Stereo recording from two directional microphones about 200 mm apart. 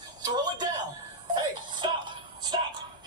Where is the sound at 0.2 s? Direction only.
20° right (ahead or behind).